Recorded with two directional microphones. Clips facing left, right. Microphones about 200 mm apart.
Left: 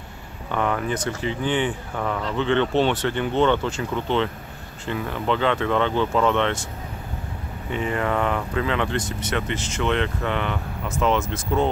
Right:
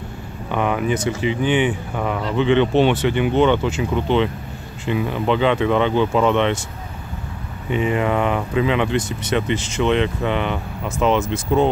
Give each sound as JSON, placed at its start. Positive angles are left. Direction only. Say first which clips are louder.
{"t": 0.5, "sound": "speech", "louder": "right 4 dB", "side_deg": -15}
{"t": 7.7, "sound": "speech", "louder": "right 5 dB", "side_deg": -15}